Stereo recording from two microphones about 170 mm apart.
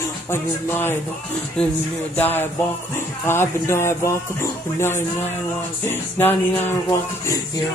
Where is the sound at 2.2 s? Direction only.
10° left (ahead or behind).